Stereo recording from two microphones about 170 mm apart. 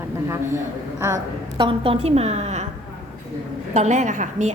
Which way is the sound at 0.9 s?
15° right (ahead or behind).